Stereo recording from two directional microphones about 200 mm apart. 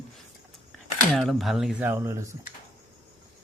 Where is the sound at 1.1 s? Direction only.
Centre (ahead or behind).